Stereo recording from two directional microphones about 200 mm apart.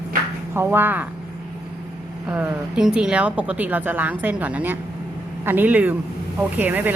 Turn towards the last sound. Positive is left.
turn(degrees=-10)  # may be behind; listen again after turning